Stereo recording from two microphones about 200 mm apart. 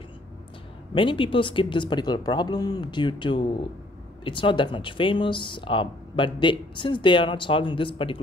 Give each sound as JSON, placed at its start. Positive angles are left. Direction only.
{"t": 0.9, "sound": "speech", "side_deg": 25}